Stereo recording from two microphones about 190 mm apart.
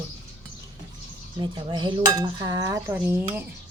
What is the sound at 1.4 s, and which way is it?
Dishes, 25° right (ahead or behind).